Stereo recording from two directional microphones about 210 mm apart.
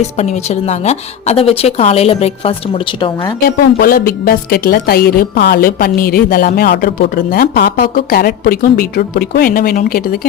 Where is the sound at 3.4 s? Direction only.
45° left (ahead or behind).